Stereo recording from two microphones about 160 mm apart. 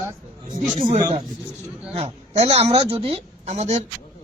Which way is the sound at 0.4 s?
55° right (ahead or behind).